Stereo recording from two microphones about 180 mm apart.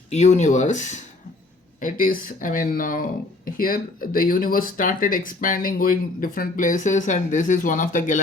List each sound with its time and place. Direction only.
0.1 s speech: 40° left (ahead or behind)